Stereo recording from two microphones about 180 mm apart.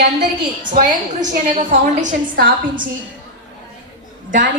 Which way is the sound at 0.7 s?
45° right (ahead or behind).